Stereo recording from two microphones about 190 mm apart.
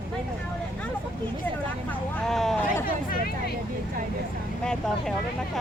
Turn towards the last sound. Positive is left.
turn(degrees=5)  # may be behind; listen again after turning